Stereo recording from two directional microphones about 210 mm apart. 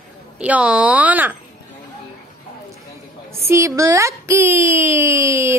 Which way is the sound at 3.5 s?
15° right (ahead or behind).